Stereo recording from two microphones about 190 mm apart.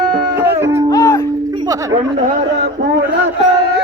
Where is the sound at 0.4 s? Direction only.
10° right (ahead or behind).